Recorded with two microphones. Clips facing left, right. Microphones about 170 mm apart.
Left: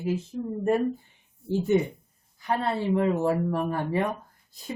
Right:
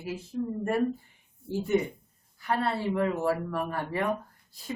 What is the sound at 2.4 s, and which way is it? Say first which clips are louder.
Speech: left 2 dB; 20° left (ahead or behind).